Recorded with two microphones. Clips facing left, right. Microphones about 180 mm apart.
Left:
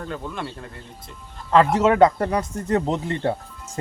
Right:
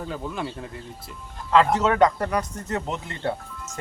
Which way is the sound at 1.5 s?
30° left (ahead or behind).